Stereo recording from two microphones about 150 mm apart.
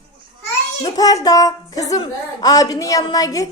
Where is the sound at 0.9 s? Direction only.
25° left (ahead or behind).